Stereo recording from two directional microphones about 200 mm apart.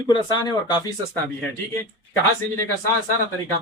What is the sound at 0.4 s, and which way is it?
Speech, 20° left (ahead or behind).